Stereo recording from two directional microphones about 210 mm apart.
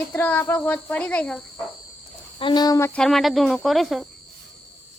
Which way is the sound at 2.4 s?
20° left (ahead or behind).